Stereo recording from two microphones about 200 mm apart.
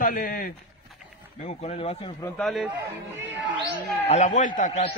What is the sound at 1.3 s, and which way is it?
Speech, 35° left (ahead or behind).